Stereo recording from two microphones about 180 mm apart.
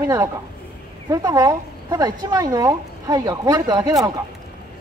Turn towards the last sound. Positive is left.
turn(degrees=-20)  # may be behind; listen again after turning